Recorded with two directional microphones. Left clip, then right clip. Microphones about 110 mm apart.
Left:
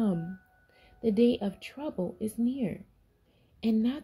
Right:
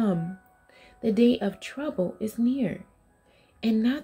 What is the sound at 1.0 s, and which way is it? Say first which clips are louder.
Speech: right 3 dB; 30° left (ahead or behind).